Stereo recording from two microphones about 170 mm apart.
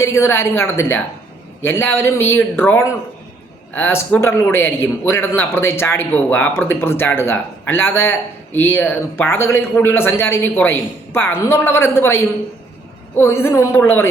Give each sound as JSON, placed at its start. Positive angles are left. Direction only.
{"t": 0.0, "sound": "a man's voice", "side_deg": 15}